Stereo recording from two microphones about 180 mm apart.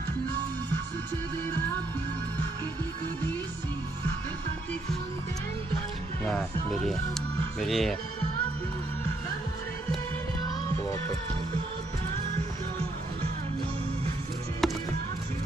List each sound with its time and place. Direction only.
6.2 s speech: 5° left (ahead or behind)
14.6 s music: centre (ahead or behind)